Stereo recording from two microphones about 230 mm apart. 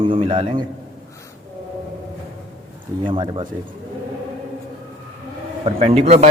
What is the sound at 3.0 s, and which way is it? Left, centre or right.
Speech, right.